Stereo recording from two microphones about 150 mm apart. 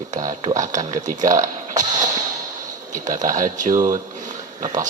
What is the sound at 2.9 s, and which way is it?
Speech, 55° right (ahead or behind).